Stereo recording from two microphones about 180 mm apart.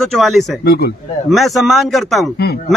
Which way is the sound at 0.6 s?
60° left (ahead or behind).